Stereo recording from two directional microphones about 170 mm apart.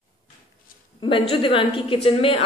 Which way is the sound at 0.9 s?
30° left (ahead or behind).